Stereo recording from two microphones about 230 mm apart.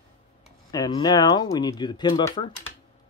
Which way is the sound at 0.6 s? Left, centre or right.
Centre.